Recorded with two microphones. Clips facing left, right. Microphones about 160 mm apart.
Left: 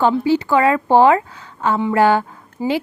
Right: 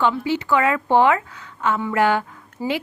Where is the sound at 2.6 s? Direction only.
15° left (ahead or behind).